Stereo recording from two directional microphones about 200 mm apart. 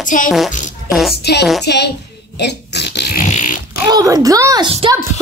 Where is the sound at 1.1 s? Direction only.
55° left (ahead or behind).